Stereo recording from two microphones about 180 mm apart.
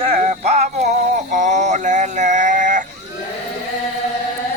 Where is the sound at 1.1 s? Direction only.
45° right (ahead or behind).